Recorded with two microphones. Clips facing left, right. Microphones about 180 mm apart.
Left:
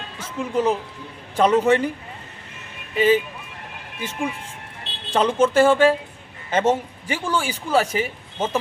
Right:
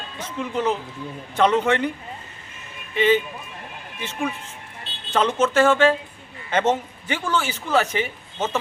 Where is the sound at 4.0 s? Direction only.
10° left (ahead or behind).